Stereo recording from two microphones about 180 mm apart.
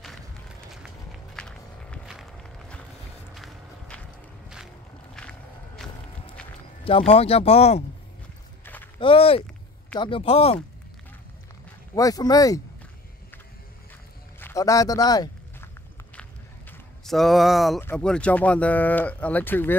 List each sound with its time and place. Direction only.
0.8 s walk: 5° left (ahead or behind)
3.3 s walk: 5° left (ahead or behind)
6.8 s speech: 30° left (ahead or behind)
9.0 s speech: 30° left (ahead or behind)
11.9 s speech: 20° left (ahead or behind)
14.4 s a sound: 15° left (ahead or behind)
17.0 s speech: centre (ahead or behind)